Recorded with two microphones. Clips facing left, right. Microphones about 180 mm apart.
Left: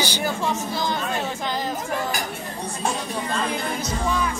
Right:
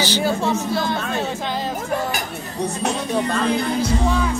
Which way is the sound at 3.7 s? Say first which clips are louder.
Right 6 dB; 30° right (ahead or behind).